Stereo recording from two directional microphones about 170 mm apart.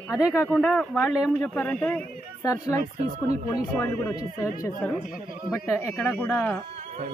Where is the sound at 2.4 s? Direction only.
20° left (ahead or behind).